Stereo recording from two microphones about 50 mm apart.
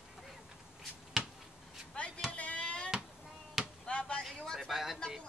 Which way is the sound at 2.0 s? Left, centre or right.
Left.